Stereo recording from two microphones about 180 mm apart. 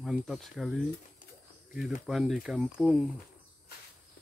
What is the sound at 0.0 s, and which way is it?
Speech, centre (ahead or behind).